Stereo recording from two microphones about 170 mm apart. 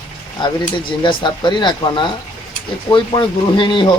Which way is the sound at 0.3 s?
25° left (ahead or behind).